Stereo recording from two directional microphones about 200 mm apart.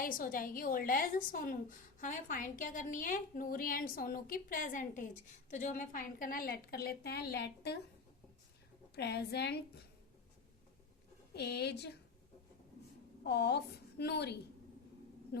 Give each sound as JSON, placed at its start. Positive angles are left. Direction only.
{"t": 0.0, "sound": "a woman's voice", "side_deg": 45}
{"t": 9.0, "sound": "a woman's voice", "side_deg": 55}
{"t": 11.3, "sound": "a woman's voice", "side_deg": 55}
{"t": 13.2, "sound": "a woman's voice", "side_deg": 55}